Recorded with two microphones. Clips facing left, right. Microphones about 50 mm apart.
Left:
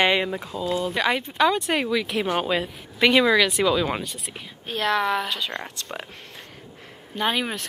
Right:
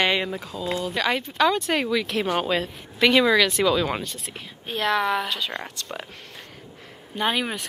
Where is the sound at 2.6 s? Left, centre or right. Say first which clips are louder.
Even; centre.